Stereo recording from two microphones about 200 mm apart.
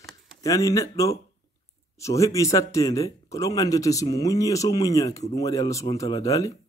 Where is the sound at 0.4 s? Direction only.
15° left (ahead or behind).